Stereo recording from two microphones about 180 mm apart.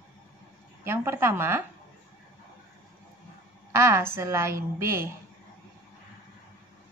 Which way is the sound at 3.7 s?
15° right (ahead or behind).